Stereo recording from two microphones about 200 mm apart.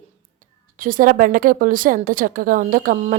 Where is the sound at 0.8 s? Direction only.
45° right (ahead or behind).